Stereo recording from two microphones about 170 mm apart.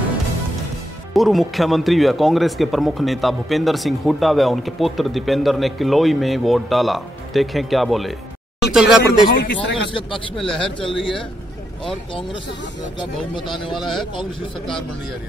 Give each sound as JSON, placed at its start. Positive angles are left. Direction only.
{"t": 1.1, "sound": "speech", "side_deg": 0}
{"t": 9.3, "sound": "speech", "side_deg": 75}
{"t": 10.3, "sound": "speech", "side_deg": 5}
{"t": 13.7, "sound": "speech", "side_deg": 0}